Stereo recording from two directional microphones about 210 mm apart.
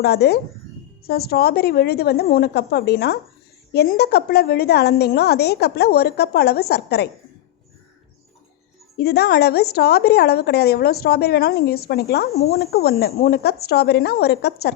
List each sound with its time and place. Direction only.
0.0 s a woman's voice: 50° left (ahead or behind)
9.0 s a woman's voice: 50° left (ahead or behind)